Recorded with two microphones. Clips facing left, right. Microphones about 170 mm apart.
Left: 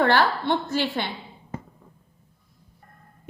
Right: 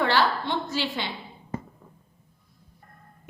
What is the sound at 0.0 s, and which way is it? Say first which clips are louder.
A woman's voice: left 3 dB; 55° left (ahead or behind).